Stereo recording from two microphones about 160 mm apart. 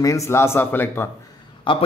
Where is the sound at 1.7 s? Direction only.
30° left (ahead or behind).